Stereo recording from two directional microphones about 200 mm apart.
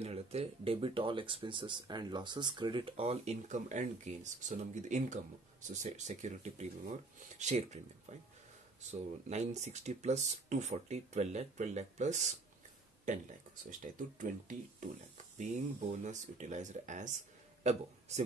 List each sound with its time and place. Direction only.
0.0 s speech: 30° right (ahead or behind)
13.7 s speech: 40° right (ahead or behind)
16.0 s speech: 35° right (ahead or behind)